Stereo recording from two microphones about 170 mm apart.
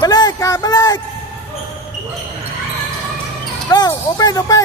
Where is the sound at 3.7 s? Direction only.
20° left (ahead or behind).